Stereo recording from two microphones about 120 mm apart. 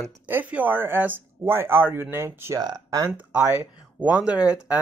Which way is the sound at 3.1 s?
15° right (ahead or behind).